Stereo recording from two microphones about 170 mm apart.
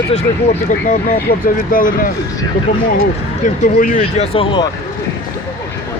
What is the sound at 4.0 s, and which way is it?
Speech, 35° left (ahead or behind).